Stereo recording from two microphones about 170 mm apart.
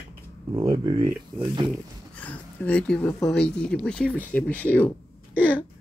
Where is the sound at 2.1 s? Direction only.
10° left (ahead or behind).